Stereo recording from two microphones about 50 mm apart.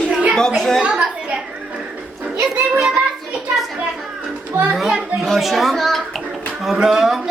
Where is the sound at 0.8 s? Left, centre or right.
Right.